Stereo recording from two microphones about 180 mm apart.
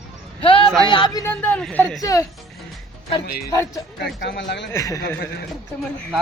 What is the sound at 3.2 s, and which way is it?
Speech, 60° left (ahead or behind).